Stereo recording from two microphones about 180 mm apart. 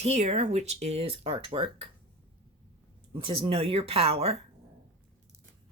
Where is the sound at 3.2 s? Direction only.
30° right (ahead or behind).